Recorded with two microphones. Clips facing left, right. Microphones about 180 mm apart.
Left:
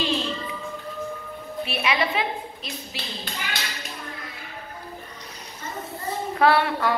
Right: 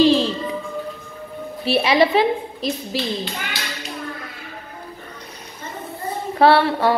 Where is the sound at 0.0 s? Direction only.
35° right (ahead or behind).